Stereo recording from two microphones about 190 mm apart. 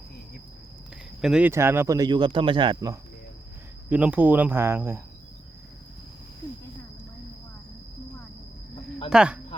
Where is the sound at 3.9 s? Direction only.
5° right (ahead or behind).